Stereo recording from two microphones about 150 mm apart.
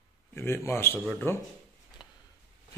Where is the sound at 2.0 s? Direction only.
30° left (ahead or behind).